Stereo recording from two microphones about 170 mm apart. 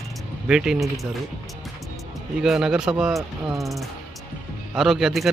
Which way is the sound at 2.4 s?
5° right (ahead or behind).